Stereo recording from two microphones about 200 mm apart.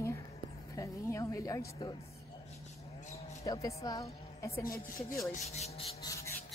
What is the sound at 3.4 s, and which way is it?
A woman's voice, 15° left (ahead or behind).